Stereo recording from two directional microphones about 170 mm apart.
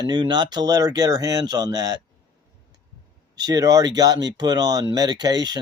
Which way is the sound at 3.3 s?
20° right (ahead or behind).